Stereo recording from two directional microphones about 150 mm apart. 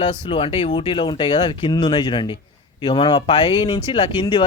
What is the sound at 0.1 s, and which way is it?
Speech, 35° left (ahead or behind).